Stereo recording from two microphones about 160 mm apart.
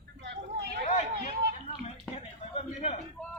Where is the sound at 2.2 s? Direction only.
40° left (ahead or behind).